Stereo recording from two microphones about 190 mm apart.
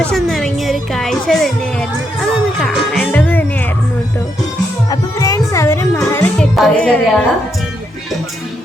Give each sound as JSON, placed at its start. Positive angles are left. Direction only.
{"t": 0.0, "sound": "speech", "side_deg": 0}
{"t": 2.6, "sound": "music", "side_deg": 5}
{"t": 4.9, "sound": "music", "side_deg": 20}
{"t": 6.4, "sound": "a woman's voice", "side_deg": 5}